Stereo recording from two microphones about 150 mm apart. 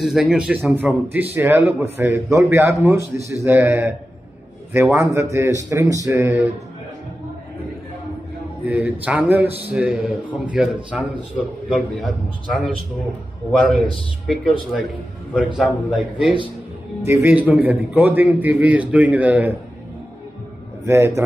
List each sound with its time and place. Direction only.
0.0 s a man's voice: 5° right (ahead or behind)
8.6 s a man's voice: 10° right (ahead or behind)
17.0 s a man's voice: 15° right (ahead or behind)
20.8 s a man's voice: 15° right (ahead or behind)